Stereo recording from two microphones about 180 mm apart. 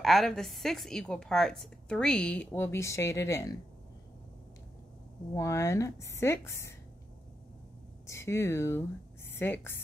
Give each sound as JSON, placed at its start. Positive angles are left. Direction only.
{"t": 0.0, "sound": "speech", "side_deg": 0}
{"t": 5.3, "sound": "a woman's voice", "side_deg": 15}
{"t": 8.1, "sound": "a woman's voice", "side_deg": 15}